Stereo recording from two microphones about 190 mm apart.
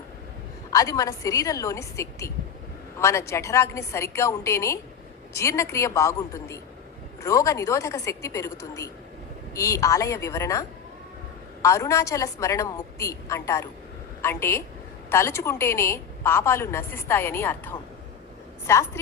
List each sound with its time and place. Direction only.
0.7 s a woman's voice: 20° left (ahead or behind)